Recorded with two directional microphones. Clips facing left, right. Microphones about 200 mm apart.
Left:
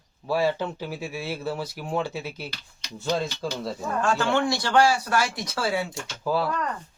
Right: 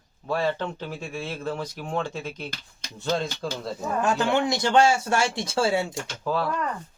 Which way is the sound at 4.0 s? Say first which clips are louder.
Even; 20° right (ahead or behind).